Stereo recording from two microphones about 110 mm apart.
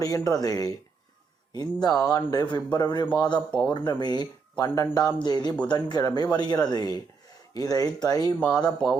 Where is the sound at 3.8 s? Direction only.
40° left (ahead or behind).